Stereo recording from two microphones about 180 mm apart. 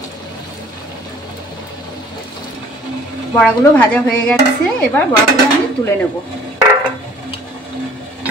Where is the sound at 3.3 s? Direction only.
5° left (ahead or behind).